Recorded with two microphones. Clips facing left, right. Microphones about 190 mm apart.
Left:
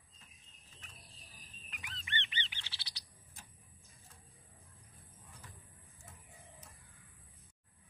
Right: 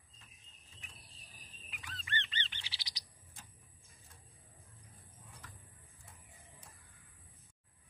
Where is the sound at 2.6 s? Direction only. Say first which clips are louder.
Right 1 dB; 15° right (ahead or behind).